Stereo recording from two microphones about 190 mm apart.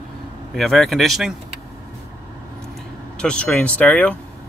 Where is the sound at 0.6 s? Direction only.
Centre (ahead or behind).